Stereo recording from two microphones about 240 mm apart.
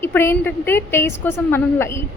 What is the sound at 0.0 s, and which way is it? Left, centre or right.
A woman's voice, centre.